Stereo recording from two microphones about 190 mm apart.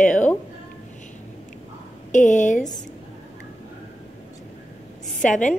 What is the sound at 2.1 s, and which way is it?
Speech, 40° left (ahead or behind).